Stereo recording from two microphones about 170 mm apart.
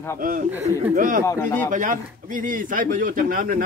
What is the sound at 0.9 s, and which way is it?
Speech, 50° right (ahead or behind).